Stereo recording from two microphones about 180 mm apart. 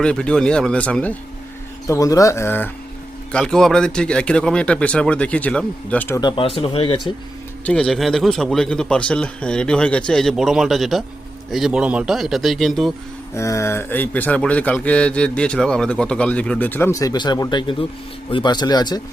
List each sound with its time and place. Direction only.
0.0 s a man's voice: 5° left (ahead or behind)
1.9 s a man's voice: 20° left (ahead or behind)
6.1 s speech: 25° left (ahead or behind)
7.6 s a man's voice: 5° left (ahead or behind)
13.3 s speech: 15° left (ahead or behind)